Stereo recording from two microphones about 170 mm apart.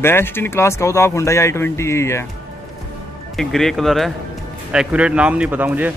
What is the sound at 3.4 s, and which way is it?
A man's voice, centre (ahead or behind).